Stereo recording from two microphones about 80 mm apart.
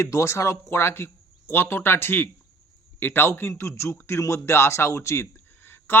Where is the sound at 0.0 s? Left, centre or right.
Left.